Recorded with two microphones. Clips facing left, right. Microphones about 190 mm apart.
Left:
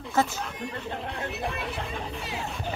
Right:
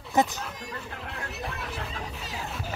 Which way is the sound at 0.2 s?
20° right (ahead or behind).